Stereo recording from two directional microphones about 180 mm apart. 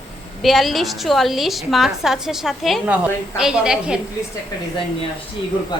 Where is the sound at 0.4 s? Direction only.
Centre (ahead or behind).